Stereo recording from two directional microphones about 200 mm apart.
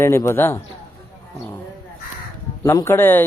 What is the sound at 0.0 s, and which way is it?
Speech, 15° left (ahead or behind).